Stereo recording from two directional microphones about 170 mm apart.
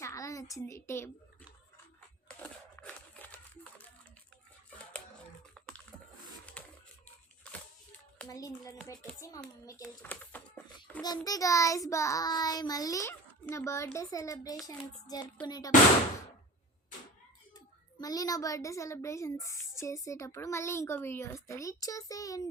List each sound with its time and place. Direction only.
0.0 s a child's voice: 20° left (ahead or behind)
2.2 s a sound: 10° left (ahead or behind)
5.6 s typing: centre (ahead or behind)
6.6 s a sound: 10° left (ahead or behind)
8.3 s child singing: 20° left (ahead or behind)
9.8 s speech: 10° left (ahead or behind)
11.0 s child singing: 25° left (ahead or behind)
18.0 s speech: 20° left (ahead or behind)